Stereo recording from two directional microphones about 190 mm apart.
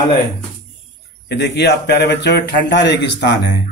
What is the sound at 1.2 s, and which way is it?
Speech, 65° left (ahead or behind).